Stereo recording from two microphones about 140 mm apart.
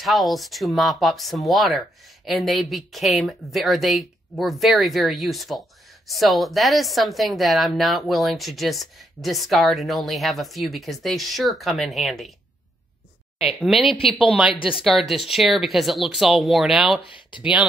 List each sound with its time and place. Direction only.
0.0 s speech: centre (ahead or behind)
13.7 s speech: 40° left (ahead or behind)
14.1 s speech: 5° right (ahead or behind)